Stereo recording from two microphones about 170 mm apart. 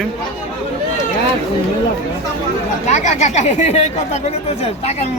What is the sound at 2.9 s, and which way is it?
Speech, 40° left (ahead or behind).